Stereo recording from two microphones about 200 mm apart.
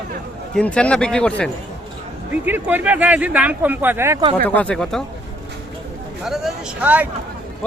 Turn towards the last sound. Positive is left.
turn(degrees=-5)  # may be behind; listen again after turning